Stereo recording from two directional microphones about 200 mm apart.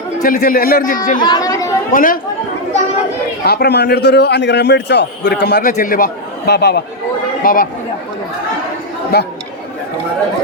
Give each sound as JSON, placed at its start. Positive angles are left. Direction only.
{"t": 0.2, "sound": "a man's voice", "side_deg": 40}
{"t": 1.2, "sound": "chatter", "side_deg": 20}
{"t": 1.9, "sound": "speech", "side_deg": 45}
{"t": 3.4, "sound": "a man's voice", "side_deg": 50}
{"t": 5.7, "sound": "a man's voice", "side_deg": 45}
{"t": 7.4, "sound": "a man's voice", "side_deg": 45}
{"t": 9.1, "sound": "a man's voice", "side_deg": 55}